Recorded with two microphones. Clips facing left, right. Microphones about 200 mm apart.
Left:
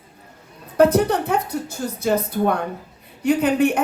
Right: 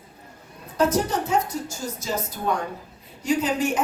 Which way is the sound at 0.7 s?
60° left (ahead or behind).